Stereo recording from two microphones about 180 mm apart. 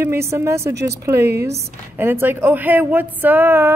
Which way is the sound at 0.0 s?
15° right (ahead or behind).